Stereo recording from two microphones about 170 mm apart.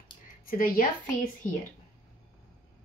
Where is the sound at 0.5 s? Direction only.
55° left (ahead or behind).